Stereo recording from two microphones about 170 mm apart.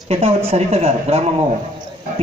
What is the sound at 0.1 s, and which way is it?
A man's voice, 35° right (ahead or behind).